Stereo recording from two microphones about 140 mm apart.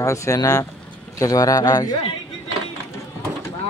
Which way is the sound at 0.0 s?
20° left (ahead or behind).